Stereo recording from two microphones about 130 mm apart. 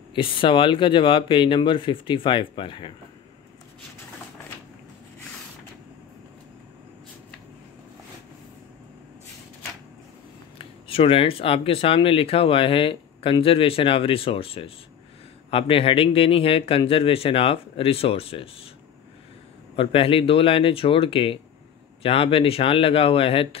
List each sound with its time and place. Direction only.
0.1 s speech: 40° left (ahead or behind)
10.6 s speech: 45° left (ahead or behind)
19.7 s speech: 45° left (ahead or behind)